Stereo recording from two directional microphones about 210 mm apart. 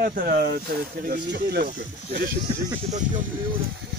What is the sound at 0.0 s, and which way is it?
Speech, 45° right (ahead or behind).